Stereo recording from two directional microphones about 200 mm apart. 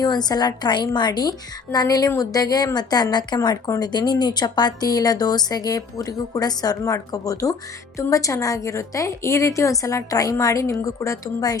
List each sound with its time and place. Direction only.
0.0 s a woman's voice: 20° left (ahead or behind)